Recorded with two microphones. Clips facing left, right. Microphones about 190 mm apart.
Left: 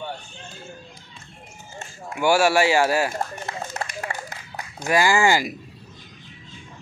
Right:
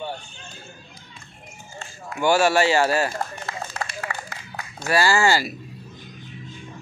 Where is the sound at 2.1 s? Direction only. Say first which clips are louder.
Even; 10° left (ahead or behind).